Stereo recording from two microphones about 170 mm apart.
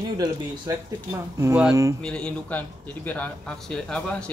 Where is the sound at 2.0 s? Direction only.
5° left (ahead or behind).